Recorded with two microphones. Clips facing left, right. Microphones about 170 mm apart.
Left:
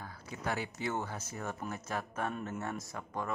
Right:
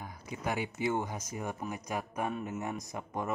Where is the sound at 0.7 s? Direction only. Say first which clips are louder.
Right 4 dB; 15° right (ahead or behind).